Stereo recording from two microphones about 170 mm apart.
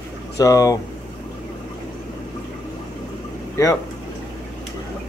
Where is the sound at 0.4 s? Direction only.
20° left (ahead or behind).